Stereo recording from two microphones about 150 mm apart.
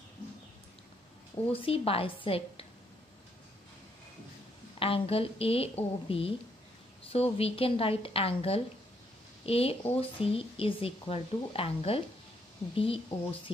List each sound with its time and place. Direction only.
1.5 s speech: 40° left (ahead or behind)
4.7 s speech: 40° left (ahead or behind)